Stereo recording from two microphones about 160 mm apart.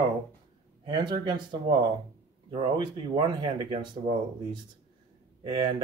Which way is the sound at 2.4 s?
30° right (ahead or behind).